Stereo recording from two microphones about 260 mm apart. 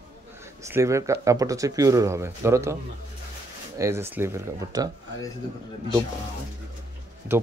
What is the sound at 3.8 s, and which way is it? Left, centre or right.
Speech, centre.